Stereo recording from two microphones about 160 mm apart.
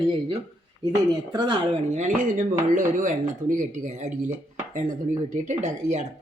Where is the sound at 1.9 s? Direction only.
50° right (ahead or behind).